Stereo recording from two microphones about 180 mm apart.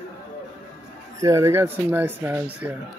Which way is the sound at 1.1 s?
15° right (ahead or behind).